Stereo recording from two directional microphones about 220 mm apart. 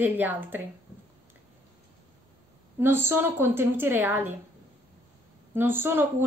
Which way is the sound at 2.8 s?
10° right (ahead or behind).